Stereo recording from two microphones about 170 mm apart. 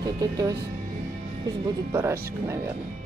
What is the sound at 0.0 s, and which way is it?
Speech, 20° right (ahead or behind).